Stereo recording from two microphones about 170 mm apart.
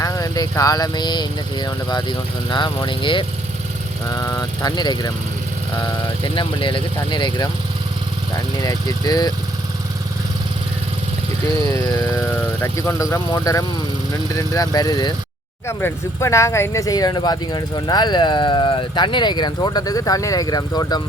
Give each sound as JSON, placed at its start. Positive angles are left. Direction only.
{"t": 0.0, "sound": "speech", "side_deg": 20}
{"t": 8.5, "sound": "speech", "side_deg": 25}
{"t": 11.6, "sound": "speech", "side_deg": 15}